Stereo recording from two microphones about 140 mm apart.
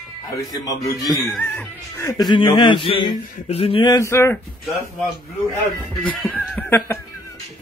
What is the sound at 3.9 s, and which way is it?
Speech, 20° left (ahead or behind).